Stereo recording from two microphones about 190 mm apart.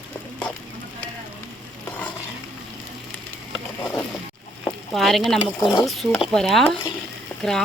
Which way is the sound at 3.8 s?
15° left (ahead or behind).